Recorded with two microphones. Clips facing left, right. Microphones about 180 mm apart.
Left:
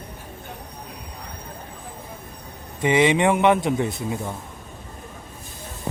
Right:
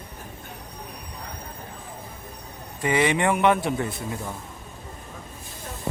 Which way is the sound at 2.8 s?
20° left (ahead or behind).